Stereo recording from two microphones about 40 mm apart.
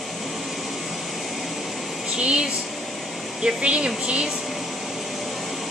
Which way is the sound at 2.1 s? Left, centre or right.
Right.